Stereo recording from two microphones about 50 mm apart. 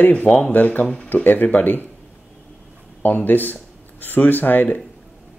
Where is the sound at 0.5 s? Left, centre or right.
Left.